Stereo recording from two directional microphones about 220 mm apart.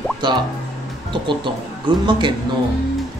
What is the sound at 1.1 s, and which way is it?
Speech, 20° right (ahead or behind).